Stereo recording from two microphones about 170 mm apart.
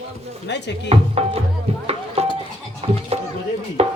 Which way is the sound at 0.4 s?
90° left.